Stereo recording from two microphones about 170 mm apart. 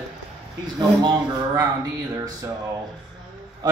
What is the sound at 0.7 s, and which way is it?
Speech, 25° right (ahead or behind).